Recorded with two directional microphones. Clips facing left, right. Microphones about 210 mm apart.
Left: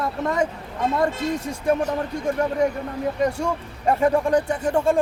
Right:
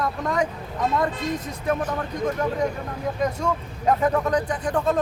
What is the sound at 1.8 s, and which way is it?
Speech, 40° left (ahead or behind).